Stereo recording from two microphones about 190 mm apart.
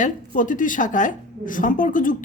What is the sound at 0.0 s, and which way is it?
Speech, 45° left (ahead or behind).